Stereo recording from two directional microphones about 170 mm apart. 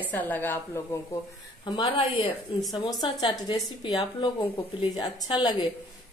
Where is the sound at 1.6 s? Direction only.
25° left (ahead or behind).